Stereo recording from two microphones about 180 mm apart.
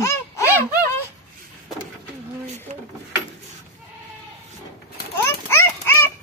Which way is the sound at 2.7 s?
45° right (ahead or behind).